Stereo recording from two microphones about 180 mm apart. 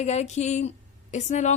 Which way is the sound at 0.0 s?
40° left (ahead or behind).